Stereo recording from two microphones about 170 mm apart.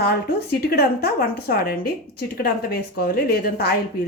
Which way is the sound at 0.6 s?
65° left (ahead or behind).